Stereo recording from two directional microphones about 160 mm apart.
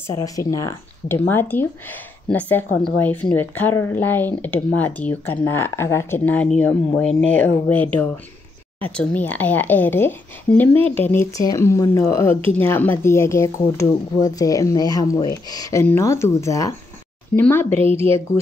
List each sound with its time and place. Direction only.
0.0 s speech: 20° left (ahead or behind)